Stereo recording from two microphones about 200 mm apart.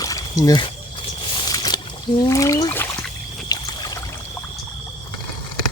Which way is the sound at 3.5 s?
20° left (ahead or behind).